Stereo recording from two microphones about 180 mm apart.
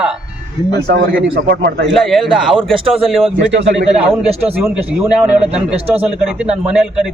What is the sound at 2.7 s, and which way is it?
Speech, 30° right (ahead or behind).